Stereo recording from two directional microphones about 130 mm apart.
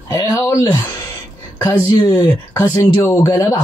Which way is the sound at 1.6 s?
30° left (ahead or behind).